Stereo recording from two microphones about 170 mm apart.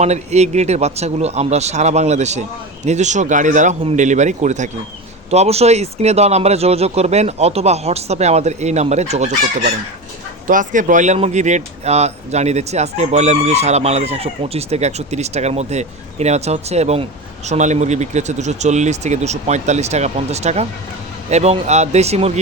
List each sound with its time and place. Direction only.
0.0 s speech: 40° right (ahead or behind)
10.4 s speech: 50° right (ahead or behind)